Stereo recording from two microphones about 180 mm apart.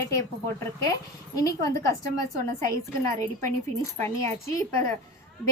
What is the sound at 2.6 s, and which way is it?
Speech, 20° left (ahead or behind).